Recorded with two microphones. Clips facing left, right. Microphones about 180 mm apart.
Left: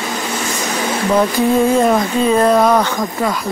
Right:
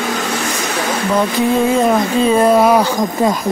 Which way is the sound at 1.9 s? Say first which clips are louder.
Right 1 dB; 5° right (ahead or behind).